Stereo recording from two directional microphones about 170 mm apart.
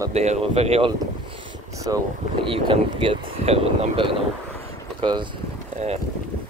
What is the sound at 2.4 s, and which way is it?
Speech, 30° right (ahead or behind).